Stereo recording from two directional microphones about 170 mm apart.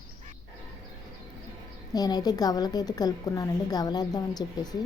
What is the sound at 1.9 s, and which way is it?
A woman's voice, 20° left (ahead or behind).